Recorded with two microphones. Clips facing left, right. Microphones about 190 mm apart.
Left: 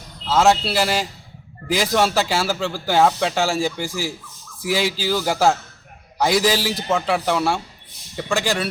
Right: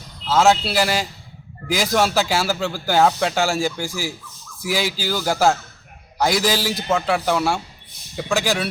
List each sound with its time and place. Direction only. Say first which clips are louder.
0.3 s speech: even; centre (ahead or behind)